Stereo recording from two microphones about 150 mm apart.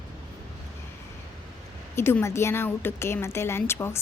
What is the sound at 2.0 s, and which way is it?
A woman's voice, 15° left (ahead or behind).